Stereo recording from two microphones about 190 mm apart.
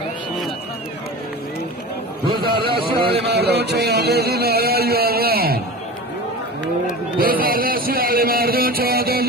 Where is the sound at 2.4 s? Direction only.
25° right (ahead or behind).